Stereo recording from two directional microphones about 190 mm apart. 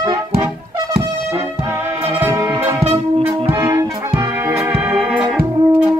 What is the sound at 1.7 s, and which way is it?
Music, 15° right (ahead or behind).